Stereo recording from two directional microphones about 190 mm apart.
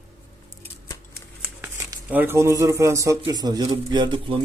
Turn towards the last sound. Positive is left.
turn(degrees=-25)  # may be behind; listen again after turning